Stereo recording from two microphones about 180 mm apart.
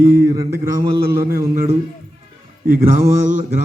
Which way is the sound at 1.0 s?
60° right (ahead or behind).